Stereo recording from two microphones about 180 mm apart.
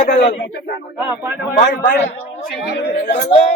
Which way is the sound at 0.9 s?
10° right (ahead or behind).